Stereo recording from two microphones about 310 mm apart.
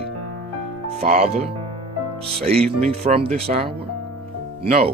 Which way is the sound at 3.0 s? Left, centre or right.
Right.